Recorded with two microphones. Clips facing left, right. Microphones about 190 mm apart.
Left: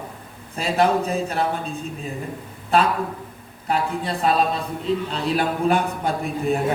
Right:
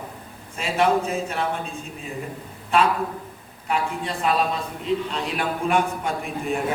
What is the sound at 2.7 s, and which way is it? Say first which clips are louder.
A man's voice: left 1 dB; 35° left (ahead or behind).